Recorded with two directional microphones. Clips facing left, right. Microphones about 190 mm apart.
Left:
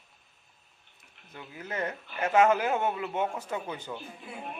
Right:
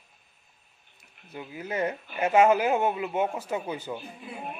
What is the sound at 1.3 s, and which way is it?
Speech, 15° right (ahead or behind).